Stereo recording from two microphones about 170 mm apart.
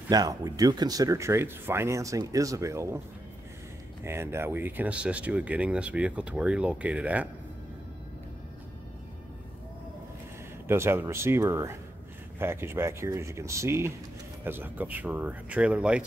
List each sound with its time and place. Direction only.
0.1 s speech: 20° right (ahead or behind)
4.0 s speech: 15° right (ahead or behind)
10.7 s speech: 15° right (ahead or behind)